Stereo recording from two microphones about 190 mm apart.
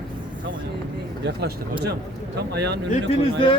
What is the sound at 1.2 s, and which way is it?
Speech, 60° right (ahead or behind).